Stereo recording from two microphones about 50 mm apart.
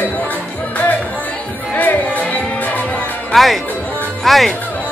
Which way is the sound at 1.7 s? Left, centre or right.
Left.